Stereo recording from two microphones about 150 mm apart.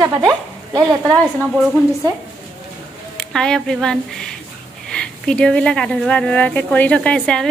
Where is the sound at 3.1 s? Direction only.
5° left (ahead or behind).